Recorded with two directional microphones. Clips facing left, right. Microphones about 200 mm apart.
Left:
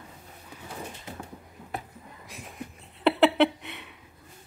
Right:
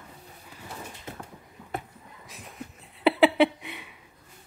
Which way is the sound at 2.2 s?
Centre (ahead or behind).